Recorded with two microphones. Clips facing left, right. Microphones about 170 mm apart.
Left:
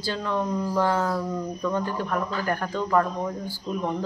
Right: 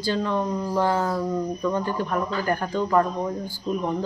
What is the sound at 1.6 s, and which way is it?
Speech, centre (ahead or behind).